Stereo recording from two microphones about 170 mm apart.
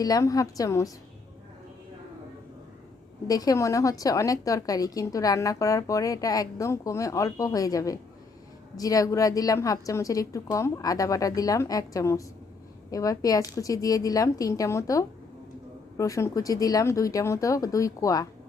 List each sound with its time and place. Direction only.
0.0 s a woman's voice: 20° left (ahead or behind)
3.2 s a woman's voice: 20° left (ahead or behind)